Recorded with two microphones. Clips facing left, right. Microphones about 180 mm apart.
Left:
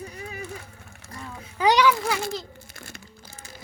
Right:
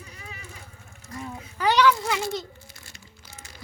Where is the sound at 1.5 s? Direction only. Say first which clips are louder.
Left 1 dB; 15° left (ahead or behind).